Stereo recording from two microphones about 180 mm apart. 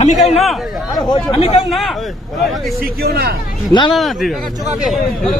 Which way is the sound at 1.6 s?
Centre (ahead or behind).